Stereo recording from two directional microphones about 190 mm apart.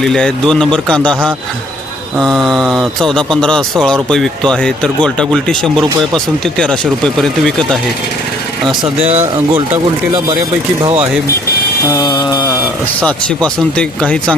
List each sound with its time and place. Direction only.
0.0 s speech: 5° left (ahead or behind)
8.8 s speech: 30° right (ahead or behind)
10.8 s speech: 30° right (ahead or behind)
11.9 s a sound: 20° left (ahead or behind)
13.0 s speech: 5° left (ahead or behind)